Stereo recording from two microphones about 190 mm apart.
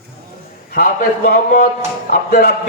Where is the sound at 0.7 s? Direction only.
55° left (ahead or behind).